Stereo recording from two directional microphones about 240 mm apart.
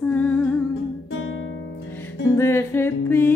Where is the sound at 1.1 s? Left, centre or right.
Left.